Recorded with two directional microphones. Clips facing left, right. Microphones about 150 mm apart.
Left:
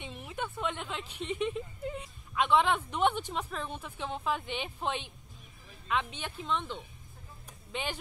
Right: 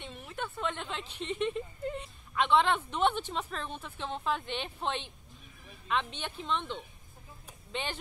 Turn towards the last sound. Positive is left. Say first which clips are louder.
# even
turn(degrees=10)  # may be behind; listen again after turning